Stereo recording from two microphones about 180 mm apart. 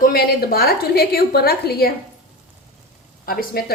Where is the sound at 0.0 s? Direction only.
60° left (ahead or behind).